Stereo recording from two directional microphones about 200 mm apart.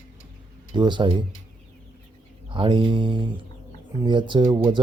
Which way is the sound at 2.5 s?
25° right (ahead or behind).